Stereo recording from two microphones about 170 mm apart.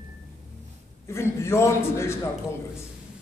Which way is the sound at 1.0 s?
15° left (ahead or behind).